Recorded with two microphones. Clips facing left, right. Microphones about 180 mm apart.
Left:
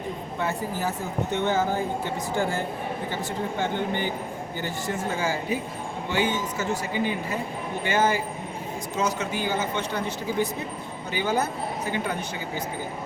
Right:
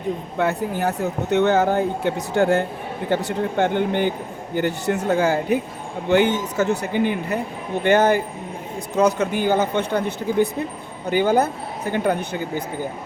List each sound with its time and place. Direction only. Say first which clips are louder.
0.3 s speech: right 6 dB; 65° right (ahead or behind)